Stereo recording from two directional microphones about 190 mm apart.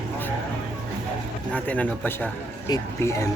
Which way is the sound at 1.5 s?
5° left (ahead or behind).